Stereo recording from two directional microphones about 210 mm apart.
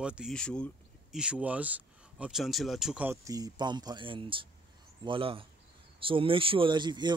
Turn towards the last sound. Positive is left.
turn(degrees=-20)  # may be behind; listen again after turning